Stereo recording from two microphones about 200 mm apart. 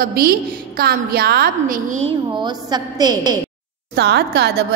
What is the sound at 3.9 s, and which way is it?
Speech, 55° right (ahead or behind).